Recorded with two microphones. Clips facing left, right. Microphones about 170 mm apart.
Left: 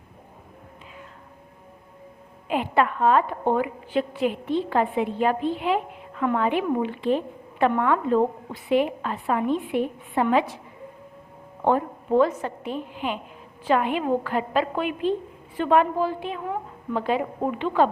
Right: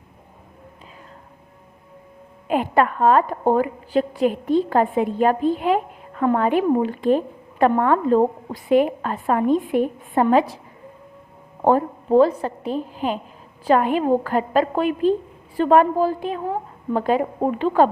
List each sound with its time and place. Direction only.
2.5 s a woman's voice: 45° right (ahead or behind)
11.6 s a woman's voice: 35° right (ahead or behind)